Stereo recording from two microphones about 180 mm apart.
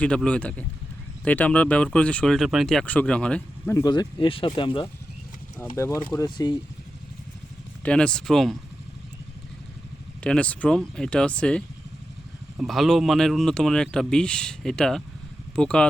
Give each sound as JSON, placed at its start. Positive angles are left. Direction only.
{"t": 0.0, "sound": "speech", "side_deg": 5}
{"t": 3.8, "sound": "speech", "side_deg": 25}
{"t": 5.5, "sound": "speech", "side_deg": 15}
{"t": 7.9, "sound": "speech", "side_deg": 5}
{"t": 10.2, "sound": "speech", "side_deg": 5}